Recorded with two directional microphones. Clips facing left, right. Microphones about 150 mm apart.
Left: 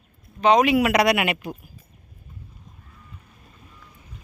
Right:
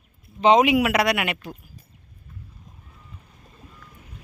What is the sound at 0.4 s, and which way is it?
Speech, 20° right (ahead or behind).